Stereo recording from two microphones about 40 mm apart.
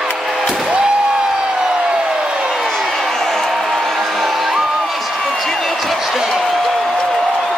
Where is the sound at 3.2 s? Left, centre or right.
Centre.